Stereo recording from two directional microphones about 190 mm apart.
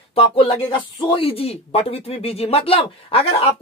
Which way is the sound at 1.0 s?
30° left (ahead or behind).